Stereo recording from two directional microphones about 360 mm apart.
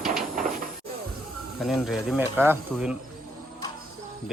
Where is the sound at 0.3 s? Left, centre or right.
Right.